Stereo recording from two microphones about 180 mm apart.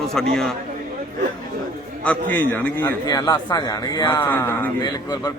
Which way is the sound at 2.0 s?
10° left (ahead or behind).